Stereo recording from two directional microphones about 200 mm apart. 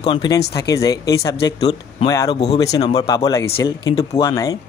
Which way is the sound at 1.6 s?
30° left (ahead or behind).